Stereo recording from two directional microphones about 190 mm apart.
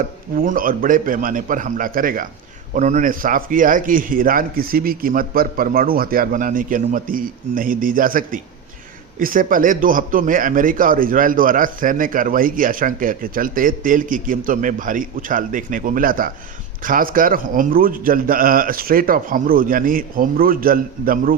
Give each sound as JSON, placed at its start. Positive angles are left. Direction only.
{"t": 0.3, "sound": "a man's voice", "side_deg": -45}